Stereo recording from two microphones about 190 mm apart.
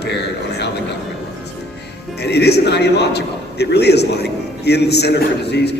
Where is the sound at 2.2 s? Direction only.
60° left (ahead or behind).